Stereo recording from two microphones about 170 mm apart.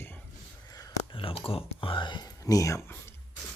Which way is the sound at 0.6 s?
20° left (ahead or behind).